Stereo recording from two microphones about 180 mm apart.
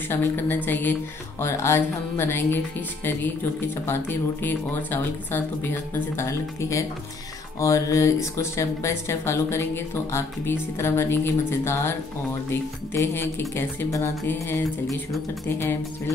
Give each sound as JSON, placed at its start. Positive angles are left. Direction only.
{"t": 0.1, "sound": "speech", "side_deg": 10}
{"t": 3.8, "sound": "speech", "side_deg": 10}